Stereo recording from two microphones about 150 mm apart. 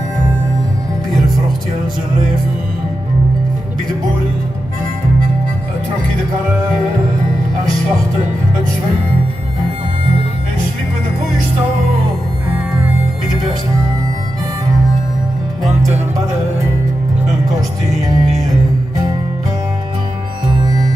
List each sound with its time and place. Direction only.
17.6 s music: 25° right (ahead or behind)
20.4 s music: 30° right (ahead or behind)